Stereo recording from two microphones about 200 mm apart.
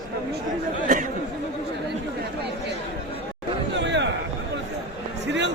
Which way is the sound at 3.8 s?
65° right (ahead or behind).